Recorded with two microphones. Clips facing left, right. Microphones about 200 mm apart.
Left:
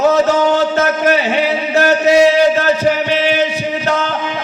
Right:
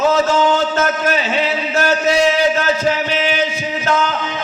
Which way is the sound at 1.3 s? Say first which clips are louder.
Left 4 dB; 15° left (ahead or behind).